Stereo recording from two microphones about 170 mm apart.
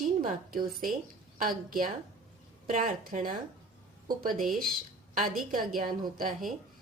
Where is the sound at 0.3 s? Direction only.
55° right (ahead or behind).